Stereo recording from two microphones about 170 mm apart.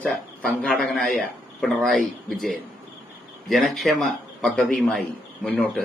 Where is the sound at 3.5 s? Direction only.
Centre (ahead or behind).